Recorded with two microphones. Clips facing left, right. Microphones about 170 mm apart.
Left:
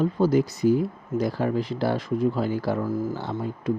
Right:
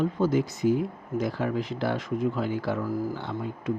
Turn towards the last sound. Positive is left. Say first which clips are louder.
# left 3 dB
turn(degrees=35)  # may be behind; listen again after turning